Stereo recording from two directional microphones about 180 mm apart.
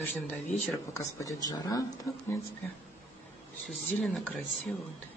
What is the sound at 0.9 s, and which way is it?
Speech, 20° left (ahead or behind).